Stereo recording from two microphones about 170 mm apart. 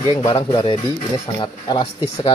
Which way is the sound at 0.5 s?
30° left (ahead or behind).